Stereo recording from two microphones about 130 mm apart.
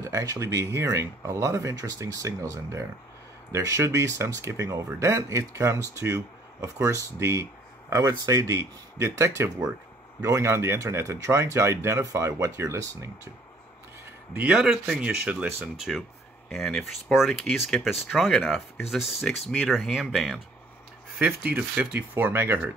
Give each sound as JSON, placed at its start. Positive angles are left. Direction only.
{"t": 0.0, "sound": "speech", "side_deg": -25}
{"t": 14.3, "sound": "speech", "side_deg": -10}
{"t": 21.4, "sound": "speech", "side_deg": -10}